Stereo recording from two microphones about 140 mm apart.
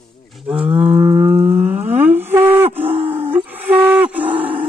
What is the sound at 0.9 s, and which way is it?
Livestock, 45° right (ahead or behind).